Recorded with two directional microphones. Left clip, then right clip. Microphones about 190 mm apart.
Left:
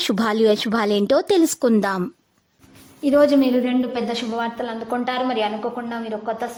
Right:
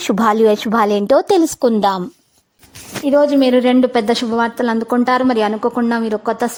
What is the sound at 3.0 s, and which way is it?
Speech, centre (ahead or behind).